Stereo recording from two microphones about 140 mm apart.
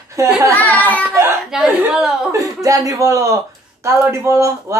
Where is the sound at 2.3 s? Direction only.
25° right (ahead or behind).